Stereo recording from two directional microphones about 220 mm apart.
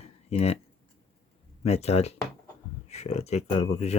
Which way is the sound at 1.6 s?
30° left (ahead or behind).